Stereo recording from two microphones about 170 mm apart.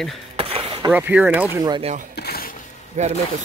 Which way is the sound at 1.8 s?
40° right (ahead or behind).